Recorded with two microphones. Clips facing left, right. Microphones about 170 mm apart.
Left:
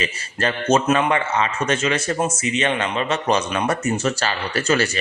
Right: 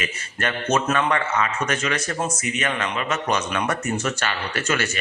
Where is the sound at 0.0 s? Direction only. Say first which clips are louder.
Left 4 dB; 30° left (ahead or behind).